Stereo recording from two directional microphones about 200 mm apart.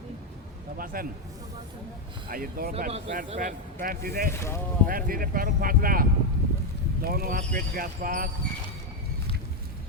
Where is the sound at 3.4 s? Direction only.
45° right (ahead or behind).